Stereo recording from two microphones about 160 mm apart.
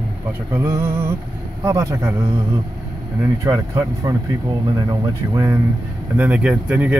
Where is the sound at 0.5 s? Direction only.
15° right (ahead or behind).